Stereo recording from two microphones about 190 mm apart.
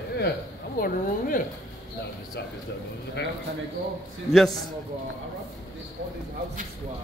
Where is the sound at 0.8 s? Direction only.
45° left (ahead or behind).